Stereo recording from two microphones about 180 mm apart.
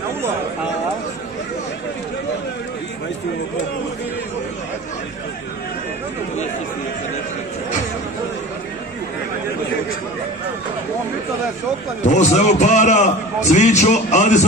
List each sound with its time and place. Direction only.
12.0 s a man's voice: 40° left (ahead or behind)